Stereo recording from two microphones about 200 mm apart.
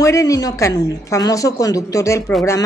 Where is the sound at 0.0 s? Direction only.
15° left (ahead or behind).